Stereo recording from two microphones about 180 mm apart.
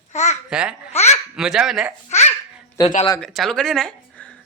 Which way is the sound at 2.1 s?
40° left (ahead or behind).